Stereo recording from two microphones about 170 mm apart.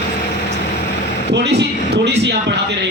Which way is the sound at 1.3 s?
80° right.